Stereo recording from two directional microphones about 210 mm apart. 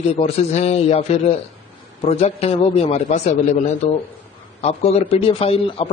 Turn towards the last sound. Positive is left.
turn(degrees=25)  # may be behind; listen again after turning